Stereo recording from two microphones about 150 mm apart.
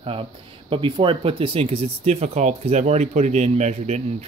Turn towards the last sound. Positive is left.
turn(degrees=-45)  # may be behind; listen again after turning